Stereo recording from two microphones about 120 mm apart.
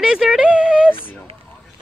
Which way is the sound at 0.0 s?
5° right (ahead or behind).